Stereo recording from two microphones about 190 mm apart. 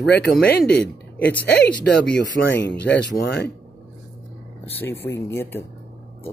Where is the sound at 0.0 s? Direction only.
65° left (ahead or behind).